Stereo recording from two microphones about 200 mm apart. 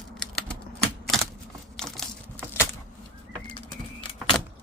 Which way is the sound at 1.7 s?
Centre (ahead or behind).